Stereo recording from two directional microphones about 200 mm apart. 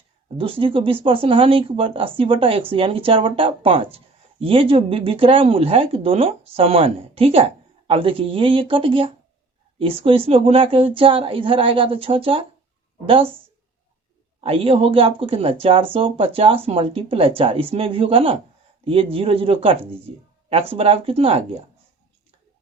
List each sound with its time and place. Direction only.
0.3 s speech: 25° right (ahead or behind)
14.4 s speech: 30° right (ahead or behind)